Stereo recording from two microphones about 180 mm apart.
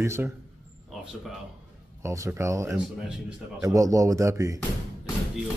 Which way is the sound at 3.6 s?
20° right (ahead or behind).